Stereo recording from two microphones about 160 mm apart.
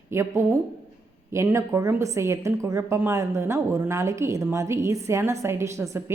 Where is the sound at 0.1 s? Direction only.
15° right (ahead or behind).